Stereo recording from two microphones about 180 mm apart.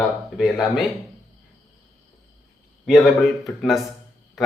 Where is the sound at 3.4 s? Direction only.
Centre (ahead or behind).